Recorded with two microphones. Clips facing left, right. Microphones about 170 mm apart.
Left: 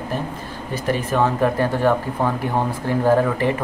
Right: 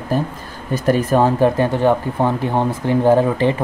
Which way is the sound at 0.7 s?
45° right (ahead or behind).